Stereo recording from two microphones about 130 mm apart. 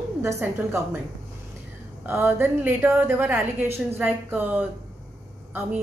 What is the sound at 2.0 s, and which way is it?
Speech, 15° right (ahead or behind).